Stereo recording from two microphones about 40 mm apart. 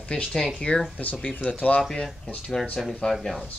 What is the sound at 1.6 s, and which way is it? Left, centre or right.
Speech, left.